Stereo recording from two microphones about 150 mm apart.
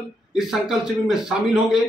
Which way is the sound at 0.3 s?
5° right (ahead or behind).